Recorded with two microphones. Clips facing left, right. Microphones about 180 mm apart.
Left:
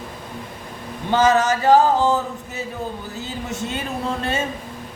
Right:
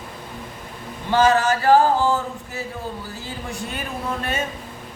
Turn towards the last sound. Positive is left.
turn(degrees=25)  # may be behind; listen again after turning